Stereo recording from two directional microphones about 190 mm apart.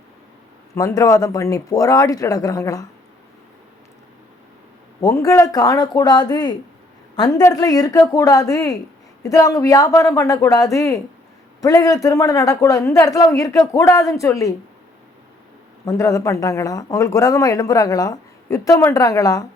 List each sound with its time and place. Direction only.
0.7 s speech: 15° left (ahead or behind)
4.9 s speech: 15° left (ahead or behind)
15.9 s speech: 20° left (ahead or behind)